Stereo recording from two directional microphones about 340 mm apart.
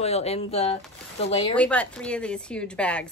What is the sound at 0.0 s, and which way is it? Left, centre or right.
Speech, centre.